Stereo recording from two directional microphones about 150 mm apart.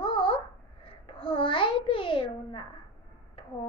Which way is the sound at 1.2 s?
35° left (ahead or behind).